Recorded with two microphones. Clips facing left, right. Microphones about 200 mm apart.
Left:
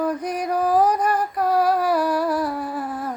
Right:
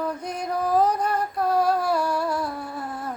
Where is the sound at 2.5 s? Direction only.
90° left.